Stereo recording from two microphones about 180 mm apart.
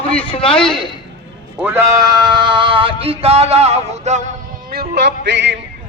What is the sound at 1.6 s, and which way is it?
Male singing, 15° right (ahead or behind).